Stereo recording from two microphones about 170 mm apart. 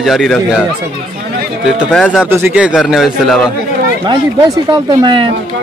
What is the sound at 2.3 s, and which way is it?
A man's voice, 10° right (ahead or behind).